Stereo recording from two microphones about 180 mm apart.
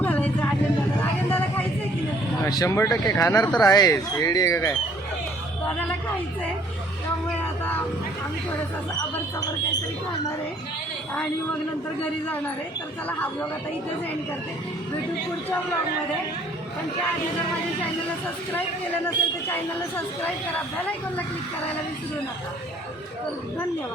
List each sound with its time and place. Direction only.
0.0 s vehicle: 10° left (ahead or behind)
2.4 s speech: 20° left (ahead or behind)
13.1 s speech: 10° left (ahead or behind)
19.0 s speech: 10° left (ahead or behind)